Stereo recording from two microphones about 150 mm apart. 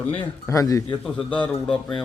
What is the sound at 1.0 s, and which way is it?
Speech, 5° left (ahead or behind).